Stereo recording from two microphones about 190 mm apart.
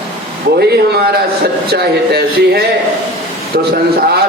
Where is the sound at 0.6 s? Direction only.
55° right (ahead or behind).